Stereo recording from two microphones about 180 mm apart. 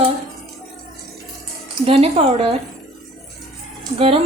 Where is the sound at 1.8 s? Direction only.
35° right (ahead or behind).